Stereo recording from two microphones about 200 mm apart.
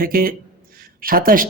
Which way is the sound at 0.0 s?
45° right (ahead or behind).